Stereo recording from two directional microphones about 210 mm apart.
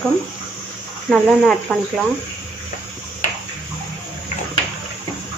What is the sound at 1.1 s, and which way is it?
Speech, centre (ahead or behind).